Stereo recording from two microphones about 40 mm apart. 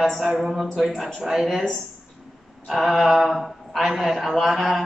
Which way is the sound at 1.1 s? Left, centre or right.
Centre.